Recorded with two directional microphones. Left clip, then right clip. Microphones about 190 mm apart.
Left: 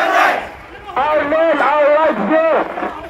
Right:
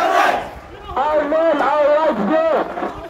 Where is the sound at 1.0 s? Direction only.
10° left (ahead or behind).